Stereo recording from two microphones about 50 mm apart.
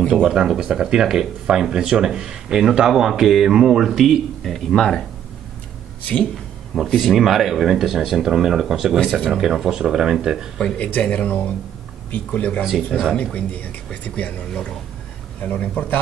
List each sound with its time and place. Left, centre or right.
0.1 s speech: centre
4.7 s a man's voice: centre
6.7 s speech: centre
10.6 s speech: centre
14.5 s a man's voice: centre